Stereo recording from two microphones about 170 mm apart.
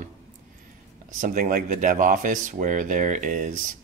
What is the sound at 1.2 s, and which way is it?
Speech, 50° right (ahead or behind).